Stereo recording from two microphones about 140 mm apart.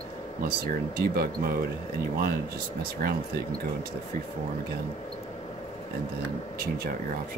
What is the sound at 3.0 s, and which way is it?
Speech, 90° right.